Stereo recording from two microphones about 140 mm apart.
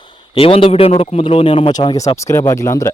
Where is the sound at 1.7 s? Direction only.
25° left (ahead or behind).